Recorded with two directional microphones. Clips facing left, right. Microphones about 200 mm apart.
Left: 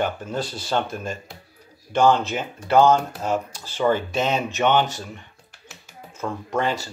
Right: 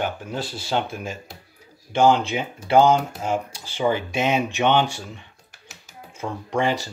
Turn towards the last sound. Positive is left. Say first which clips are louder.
# right 1 dB
turn(degrees=-15)  # may be behind; listen again after turning